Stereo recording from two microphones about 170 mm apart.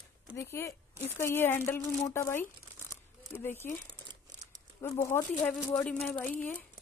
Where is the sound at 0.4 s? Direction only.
15° left (ahead or behind).